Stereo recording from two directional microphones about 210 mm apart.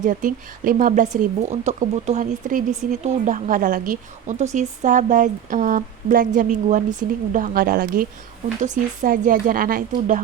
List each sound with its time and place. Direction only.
0.0 s a woman's voice: 40° right (ahead or behind)